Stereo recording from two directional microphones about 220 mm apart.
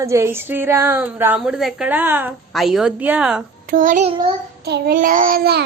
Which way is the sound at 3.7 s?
35° right (ahead or behind).